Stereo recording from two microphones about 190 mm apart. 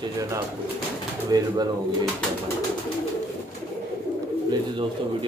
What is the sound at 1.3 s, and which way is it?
Speech, 20° right (ahead or behind).